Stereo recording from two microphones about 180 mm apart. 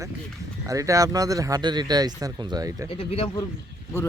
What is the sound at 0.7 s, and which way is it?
Speech, 20° right (ahead or behind).